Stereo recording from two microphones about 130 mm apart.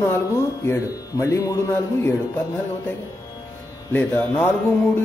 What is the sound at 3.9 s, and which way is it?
Speech, 15° left (ahead or behind).